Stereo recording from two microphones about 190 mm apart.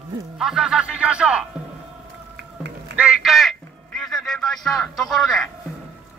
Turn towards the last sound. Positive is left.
turn(degrees=0)  # may be behind; listen again after turning